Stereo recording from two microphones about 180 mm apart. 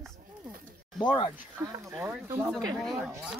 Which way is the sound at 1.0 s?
25° left (ahead or behind).